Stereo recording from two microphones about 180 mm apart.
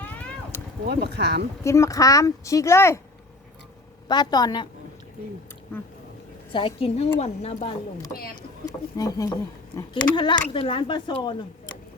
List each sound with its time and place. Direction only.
0.0 s a sound: 10° left (ahead or behind)
0.9 s speech: 70° right (ahead or behind)
1.6 s speech: 15° left (ahead or behind)
4.1 s speech: 25° left (ahead or behind)
5.7 s speech: 10° left (ahead or behind)
6.5 s a woman's voice: 30° left (ahead or behind)
8.4 s speech: 20° left (ahead or behind)